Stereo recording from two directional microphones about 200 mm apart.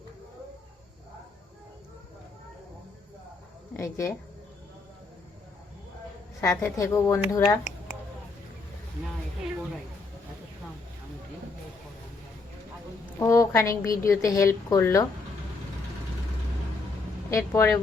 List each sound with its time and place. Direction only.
3.8 s a woman's voice: 15° left (ahead or behind)
6.4 s a woman's voice: 15° left (ahead or behind)
13.1 s a woman's voice: 15° left (ahead or behind)
17.3 s a woman's voice: 10° left (ahead or behind)